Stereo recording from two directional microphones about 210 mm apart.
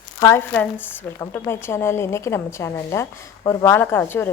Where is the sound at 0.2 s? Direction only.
10° left (ahead or behind).